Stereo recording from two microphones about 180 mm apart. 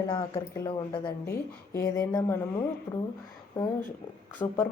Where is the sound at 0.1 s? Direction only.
20° left (ahead or behind).